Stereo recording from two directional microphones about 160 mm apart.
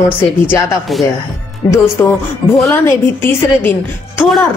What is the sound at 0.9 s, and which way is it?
Speech, centre (ahead or behind).